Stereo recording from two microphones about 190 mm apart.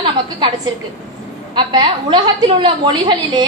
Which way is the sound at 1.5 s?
25° right (ahead or behind).